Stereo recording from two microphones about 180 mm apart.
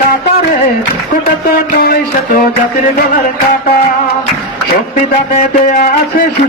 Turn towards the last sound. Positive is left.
turn(degrees=45)  # may be behind; listen again after turning